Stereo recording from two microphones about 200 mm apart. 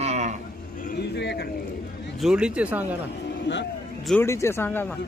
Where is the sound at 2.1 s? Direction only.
5° right (ahead or behind).